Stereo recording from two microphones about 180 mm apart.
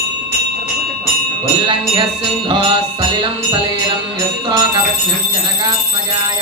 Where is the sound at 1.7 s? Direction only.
25° right (ahead or behind).